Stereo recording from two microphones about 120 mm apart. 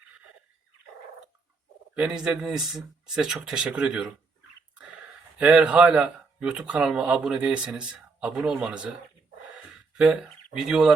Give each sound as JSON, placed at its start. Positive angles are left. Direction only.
{"t": 2.0, "sound": "speech", "side_deg": -5}
{"t": 5.4, "sound": "speech", "side_deg": -10}
{"t": 10.0, "sound": "speech", "side_deg": -5}